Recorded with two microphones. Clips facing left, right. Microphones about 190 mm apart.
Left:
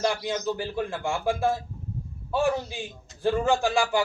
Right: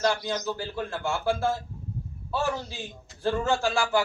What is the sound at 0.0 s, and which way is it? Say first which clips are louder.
A man's voice: even; 15° left (ahead or behind).